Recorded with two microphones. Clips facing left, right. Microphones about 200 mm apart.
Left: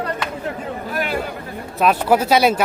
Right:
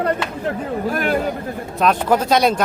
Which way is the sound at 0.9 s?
50° right (ahead or behind).